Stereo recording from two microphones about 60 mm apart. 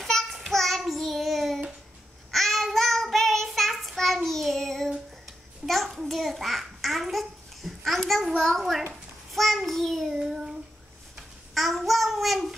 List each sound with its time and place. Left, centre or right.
0.0 s child singing: centre
8.4 s a sound: centre
9.3 s child singing: centre
10.1 s child singing: centre
11.1 s babbling: centre